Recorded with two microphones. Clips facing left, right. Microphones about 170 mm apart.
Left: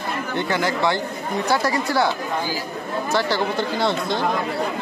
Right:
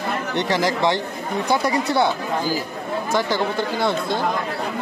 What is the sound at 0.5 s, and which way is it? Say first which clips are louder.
Speech: right 2 dB; 30° right (ahead or behind).